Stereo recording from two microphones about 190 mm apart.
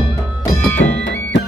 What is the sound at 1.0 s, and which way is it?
Music, 75° left (ahead or behind).